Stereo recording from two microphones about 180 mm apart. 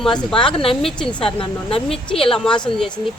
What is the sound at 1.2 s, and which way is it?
Speech, 30° left (ahead or behind).